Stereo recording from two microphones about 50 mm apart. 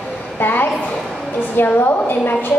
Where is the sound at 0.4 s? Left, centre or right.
Left.